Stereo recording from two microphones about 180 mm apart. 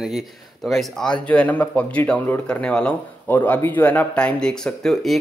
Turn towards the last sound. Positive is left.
turn(degrees=0)  # may be behind; listen again after turning